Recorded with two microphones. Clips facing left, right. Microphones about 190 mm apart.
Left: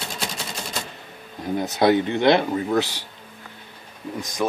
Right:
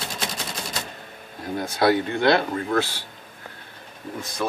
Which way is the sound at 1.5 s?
20° left (ahead or behind).